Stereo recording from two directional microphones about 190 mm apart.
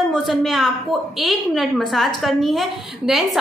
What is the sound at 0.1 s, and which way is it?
A woman's voice, centre (ahead or behind).